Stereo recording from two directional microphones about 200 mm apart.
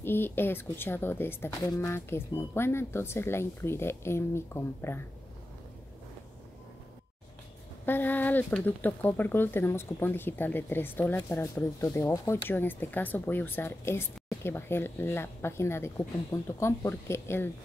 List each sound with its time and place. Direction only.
0.0 s speech: 10° left (ahead or behind)
7.8 s speech: 10° left (ahead or behind)